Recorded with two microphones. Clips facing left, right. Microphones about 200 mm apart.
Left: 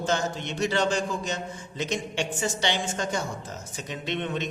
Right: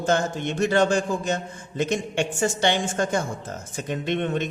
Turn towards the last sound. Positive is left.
turn(degrees=-50)  # may be behind; listen again after turning